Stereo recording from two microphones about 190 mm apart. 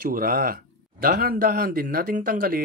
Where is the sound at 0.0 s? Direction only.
50° right (ahead or behind).